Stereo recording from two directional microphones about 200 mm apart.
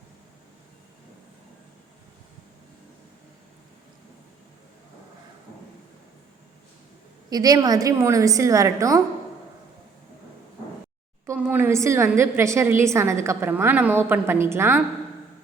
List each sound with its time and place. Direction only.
7.3 s a woman's voice: 20° right (ahead or behind)
11.3 s a woman's voice: 10° right (ahead or behind)